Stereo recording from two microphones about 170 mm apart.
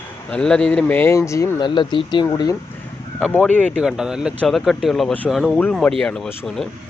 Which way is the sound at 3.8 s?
5° right (ahead or behind).